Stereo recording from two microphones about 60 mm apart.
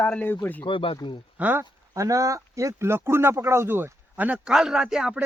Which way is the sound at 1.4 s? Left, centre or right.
Right.